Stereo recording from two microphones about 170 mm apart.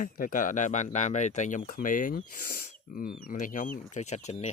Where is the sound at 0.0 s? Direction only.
55° left (ahead or behind).